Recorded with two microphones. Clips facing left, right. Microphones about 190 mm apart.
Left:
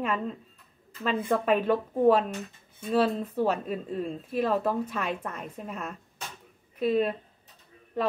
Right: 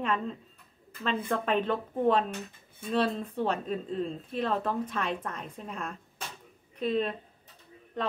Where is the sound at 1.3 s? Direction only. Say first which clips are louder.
Left 5 dB; 10° left (ahead or behind).